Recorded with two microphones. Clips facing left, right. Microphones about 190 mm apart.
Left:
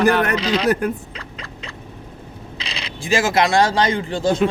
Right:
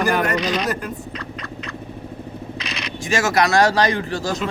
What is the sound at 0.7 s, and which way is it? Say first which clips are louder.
Speech: left 7 dB; 55° left (ahead or behind).